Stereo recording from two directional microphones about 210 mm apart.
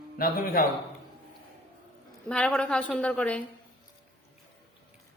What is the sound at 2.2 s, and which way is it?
A woman's voice, 5° left (ahead or behind).